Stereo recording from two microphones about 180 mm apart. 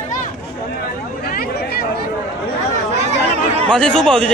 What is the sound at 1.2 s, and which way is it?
Chatter, 55° left (ahead or behind).